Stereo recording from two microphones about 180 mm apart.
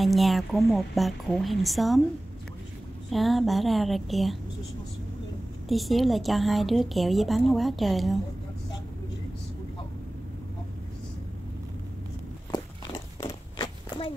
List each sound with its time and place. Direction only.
0.0 s a woman's voice: centre (ahead or behind)
3.1 s a woman's voice: centre (ahead or behind)
5.7 s a woman's voice: centre (ahead or behind)
12.4 s walk: 20° left (ahead or behind)